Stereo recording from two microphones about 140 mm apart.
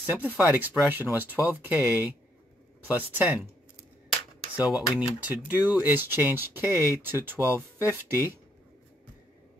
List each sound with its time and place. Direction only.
0.0 s speech: 15° right (ahead or behind)
4.6 s speech: 5° right (ahead or behind)